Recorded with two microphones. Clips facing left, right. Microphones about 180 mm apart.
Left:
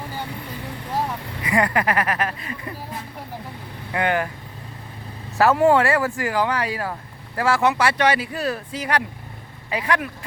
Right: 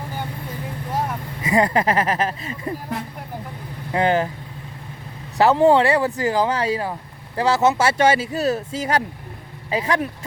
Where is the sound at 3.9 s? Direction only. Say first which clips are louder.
Right 3 dB; 30° right (ahead or behind).